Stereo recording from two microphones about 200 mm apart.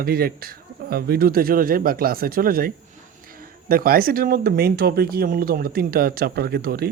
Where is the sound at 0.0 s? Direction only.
50° right (ahead or behind).